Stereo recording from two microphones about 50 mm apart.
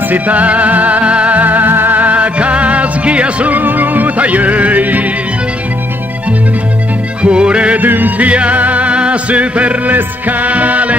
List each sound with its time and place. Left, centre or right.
0.1 s music: right
3.5 s music: right
7.2 s music: right
7.8 s music: right
8.3 s music: right